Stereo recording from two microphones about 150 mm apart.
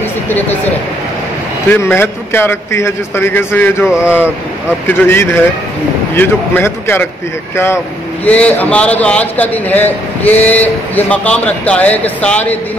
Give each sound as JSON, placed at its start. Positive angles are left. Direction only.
{"t": 1.7, "sound": "a man's voice", "side_deg": 15}
{"t": 3.8, "sound": "speech", "side_deg": -5}
{"t": 4.8, "sound": "a man's voice", "side_deg": 15}